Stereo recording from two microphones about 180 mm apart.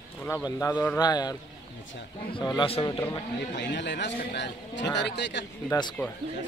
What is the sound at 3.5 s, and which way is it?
A man's voice, 75° left (ahead or behind).